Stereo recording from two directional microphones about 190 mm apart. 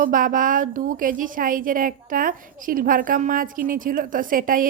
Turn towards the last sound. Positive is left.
turn(degrees=-45)  # may be behind; listen again after turning